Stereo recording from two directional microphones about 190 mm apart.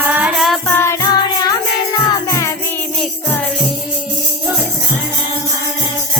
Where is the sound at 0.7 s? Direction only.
15° left (ahead or behind).